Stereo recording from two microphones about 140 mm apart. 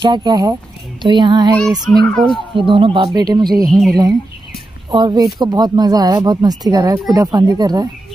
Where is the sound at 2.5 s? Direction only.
35° right (ahead or behind).